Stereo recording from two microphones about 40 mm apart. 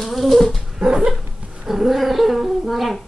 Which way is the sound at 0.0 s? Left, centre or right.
Centre.